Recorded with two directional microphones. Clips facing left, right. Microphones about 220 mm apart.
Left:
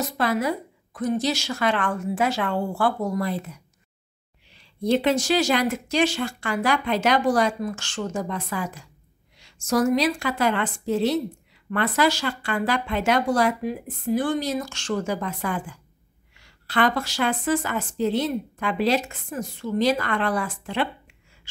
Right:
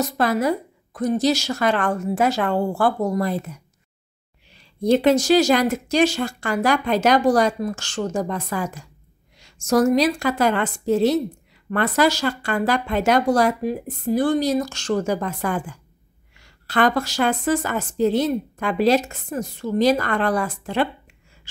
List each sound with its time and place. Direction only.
0.0 s a woman's voice: 40° right (ahead or behind)